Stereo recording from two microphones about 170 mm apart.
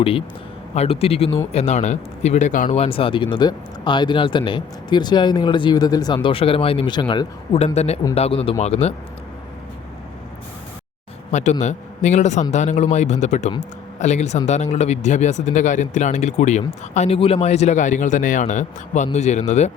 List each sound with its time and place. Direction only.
0.0 s speech: 30° left (ahead or behind); by 2.6 s 45° left (ahead or behind)
2.6 s speech: 35° left (ahead or behind)
11.3 s a man's voice: 45° left (ahead or behind)